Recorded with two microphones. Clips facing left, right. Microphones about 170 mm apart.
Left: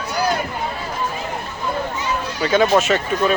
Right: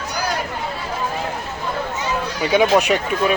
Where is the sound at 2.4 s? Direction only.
15° right (ahead or behind).